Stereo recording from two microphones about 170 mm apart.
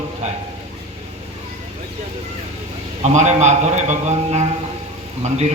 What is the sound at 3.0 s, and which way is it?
A man's voice, 45° right (ahead or behind).